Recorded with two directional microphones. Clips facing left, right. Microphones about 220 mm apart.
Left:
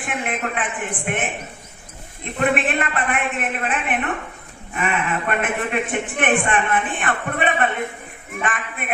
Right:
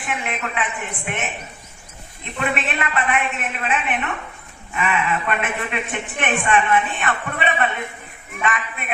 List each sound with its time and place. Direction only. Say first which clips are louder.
0.1 s a man's voice: left 2 dB; 50° left (ahead or behind)
2.4 s a man's voice: left 4 dB; 50° left (ahead or behind)